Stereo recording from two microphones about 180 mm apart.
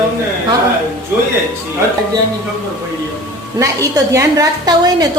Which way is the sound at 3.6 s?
15° right (ahead or behind).